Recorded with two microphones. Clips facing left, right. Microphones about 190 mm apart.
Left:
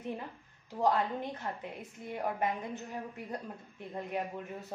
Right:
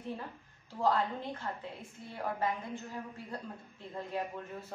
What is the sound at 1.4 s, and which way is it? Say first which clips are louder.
A woman's voice: left 1 dB; 20° left (ahead or behind).